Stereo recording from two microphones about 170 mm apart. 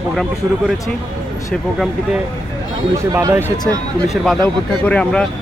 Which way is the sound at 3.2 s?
20° right (ahead or behind).